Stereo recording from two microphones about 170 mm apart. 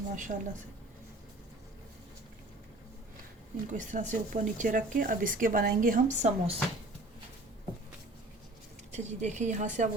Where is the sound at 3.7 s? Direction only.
45° right (ahead or behind).